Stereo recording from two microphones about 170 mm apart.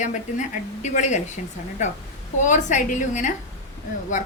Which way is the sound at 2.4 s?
45° left (ahead or behind).